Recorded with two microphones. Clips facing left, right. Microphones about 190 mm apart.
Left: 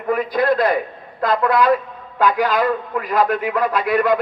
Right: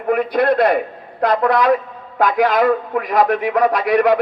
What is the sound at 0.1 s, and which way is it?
Speech, 65° right (ahead or behind).